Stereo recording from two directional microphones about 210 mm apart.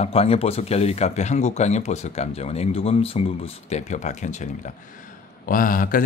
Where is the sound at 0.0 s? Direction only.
30° left (ahead or behind).